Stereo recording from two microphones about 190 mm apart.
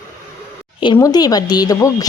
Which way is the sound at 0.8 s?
20° left (ahead or behind).